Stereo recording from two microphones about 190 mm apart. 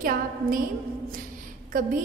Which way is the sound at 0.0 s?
50° right (ahead or behind).